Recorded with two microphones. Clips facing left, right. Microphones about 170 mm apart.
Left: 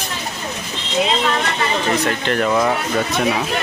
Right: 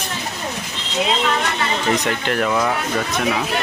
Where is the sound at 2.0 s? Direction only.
10° right (ahead or behind).